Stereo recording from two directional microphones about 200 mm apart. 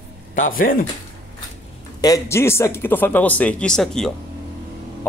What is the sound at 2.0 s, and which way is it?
Speech, 15° left (ahead or behind).